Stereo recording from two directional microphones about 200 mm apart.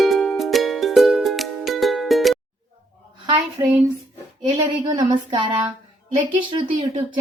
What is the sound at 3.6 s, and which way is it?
A woman's voice, 15° right (ahead or behind).